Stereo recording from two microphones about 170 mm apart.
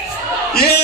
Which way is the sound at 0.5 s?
65° left (ahead or behind).